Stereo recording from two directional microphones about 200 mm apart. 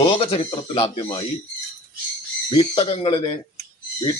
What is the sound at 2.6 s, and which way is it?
Speech, 25° left (ahead or behind).